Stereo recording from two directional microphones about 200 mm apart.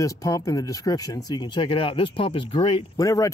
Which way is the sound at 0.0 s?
15° left (ahead or behind).